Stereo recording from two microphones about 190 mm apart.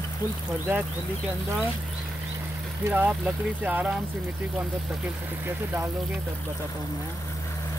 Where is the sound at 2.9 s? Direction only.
5° right (ahead or behind).